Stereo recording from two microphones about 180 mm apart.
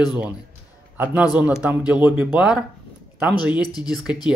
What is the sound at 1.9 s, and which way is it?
Speech, 10° right (ahead or behind).